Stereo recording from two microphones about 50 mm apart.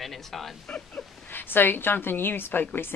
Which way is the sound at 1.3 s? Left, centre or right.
Left.